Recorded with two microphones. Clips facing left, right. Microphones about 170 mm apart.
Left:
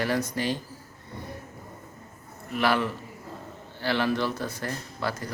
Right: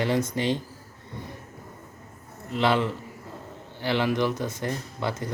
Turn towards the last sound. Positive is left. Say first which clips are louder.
# right 1 dB
turn(degrees=-20)  # may be behind; listen again after turning